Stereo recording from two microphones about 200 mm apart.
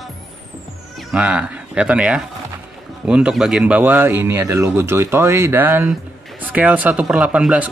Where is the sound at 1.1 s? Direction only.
5° right (ahead or behind).